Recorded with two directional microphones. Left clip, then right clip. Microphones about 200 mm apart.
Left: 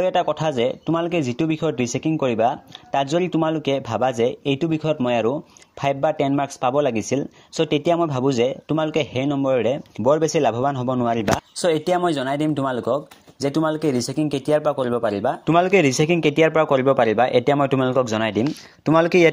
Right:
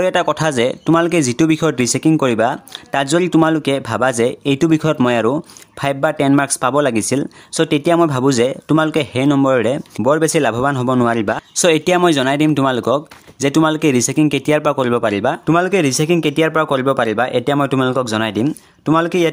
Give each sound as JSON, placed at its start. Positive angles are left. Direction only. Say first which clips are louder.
{"t": 0.0, "sound": "speech", "louder": "right 4 dB", "side_deg": -15}
{"t": 11.1, "sound": "speech", "louder": "right 4 dB", "side_deg": -10}